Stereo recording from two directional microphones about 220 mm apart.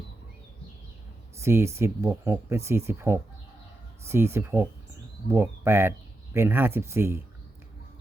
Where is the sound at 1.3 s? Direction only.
10° right (ahead or behind).